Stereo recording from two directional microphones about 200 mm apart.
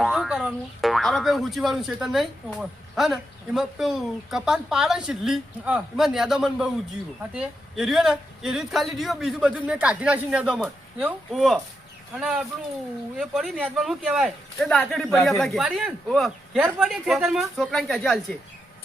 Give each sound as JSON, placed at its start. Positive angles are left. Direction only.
{"t": 0.0, "sound": "speech", "side_deg": -5}